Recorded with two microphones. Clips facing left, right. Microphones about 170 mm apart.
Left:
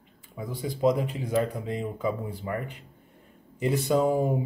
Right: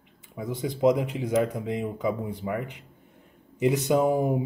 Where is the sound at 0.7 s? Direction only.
20° right (ahead or behind).